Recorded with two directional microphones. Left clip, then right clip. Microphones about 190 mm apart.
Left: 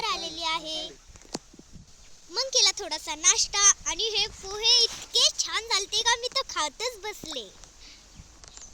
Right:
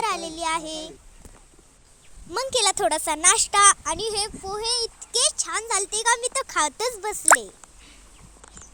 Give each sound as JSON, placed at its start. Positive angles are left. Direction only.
{"t": 0.0, "sound": "child singing", "side_deg": -40}
{"t": 2.3, "sound": "speech", "side_deg": -45}